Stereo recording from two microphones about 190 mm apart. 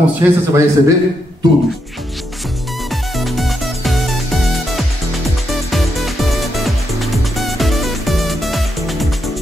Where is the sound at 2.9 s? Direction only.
Centre (ahead or behind).